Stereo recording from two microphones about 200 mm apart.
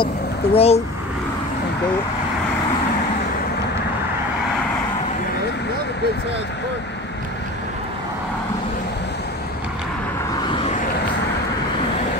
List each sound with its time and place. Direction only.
0.0 s a child's voice: 30° left (ahead or behind)